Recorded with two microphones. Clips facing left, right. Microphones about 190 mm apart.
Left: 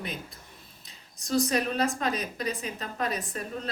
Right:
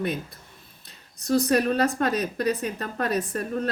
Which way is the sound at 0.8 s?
60° right (ahead or behind).